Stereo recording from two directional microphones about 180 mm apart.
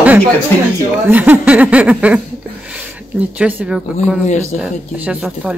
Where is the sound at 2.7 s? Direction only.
5° right (ahead or behind).